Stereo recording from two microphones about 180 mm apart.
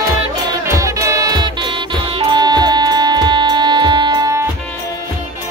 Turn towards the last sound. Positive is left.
turn(degrees=-20)  # may be behind; listen again after turning